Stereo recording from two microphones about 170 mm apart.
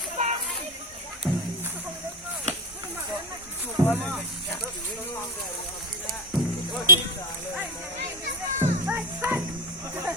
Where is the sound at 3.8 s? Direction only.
20° right (ahead or behind).